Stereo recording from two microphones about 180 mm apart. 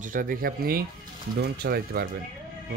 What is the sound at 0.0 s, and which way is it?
Speech, 50° right (ahead or behind).